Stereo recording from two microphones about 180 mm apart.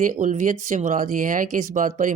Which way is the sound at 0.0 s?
45° right (ahead or behind).